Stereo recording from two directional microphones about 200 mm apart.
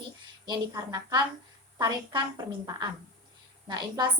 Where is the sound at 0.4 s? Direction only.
20° right (ahead or behind).